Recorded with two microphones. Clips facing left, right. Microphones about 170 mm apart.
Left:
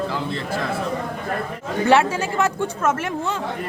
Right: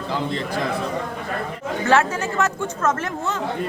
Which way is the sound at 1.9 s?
15° left (ahead or behind).